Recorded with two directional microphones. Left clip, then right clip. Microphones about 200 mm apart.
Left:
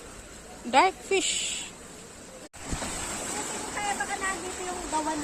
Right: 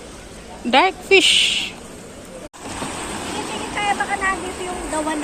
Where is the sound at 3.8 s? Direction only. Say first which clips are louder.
Right 10 dB; 25° left (ahead or behind).